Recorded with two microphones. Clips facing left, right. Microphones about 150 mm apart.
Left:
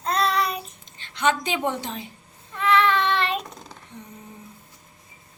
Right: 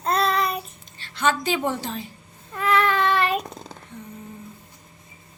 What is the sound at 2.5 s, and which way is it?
Baby cry, 40° right (ahead or behind).